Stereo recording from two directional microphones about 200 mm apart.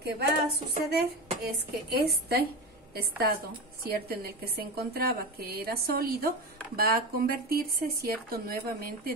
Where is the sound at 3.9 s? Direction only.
50° right (ahead or behind).